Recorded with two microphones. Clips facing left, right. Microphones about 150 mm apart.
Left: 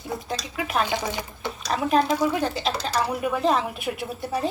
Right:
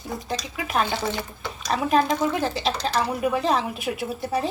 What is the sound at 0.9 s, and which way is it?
Speech, 15° left (ahead or behind).